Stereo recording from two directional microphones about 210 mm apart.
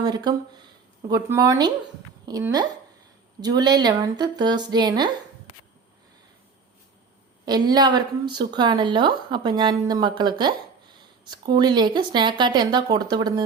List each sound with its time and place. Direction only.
0.0 s a woman's voice: 20° right (ahead or behind)
7.4 s a woman's voice: 20° right (ahead or behind)